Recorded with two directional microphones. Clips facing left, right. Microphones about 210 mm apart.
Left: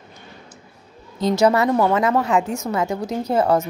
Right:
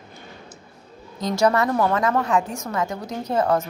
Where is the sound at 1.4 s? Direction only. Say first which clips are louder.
Left 2 dB; 20° left (ahead or behind).